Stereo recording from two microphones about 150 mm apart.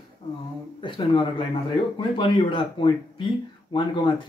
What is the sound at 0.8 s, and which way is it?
Speech, 35° left (ahead or behind).